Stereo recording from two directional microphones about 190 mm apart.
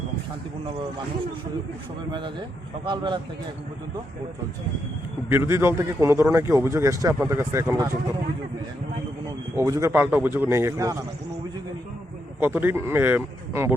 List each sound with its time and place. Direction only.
2.8 s a man's voice: 25° right (ahead or behind)
5.3 s a man's voice: 15° right (ahead or behind)
9.6 s a man's voice: 15° right (ahead or behind)
12.4 s a man's voice: 10° right (ahead or behind)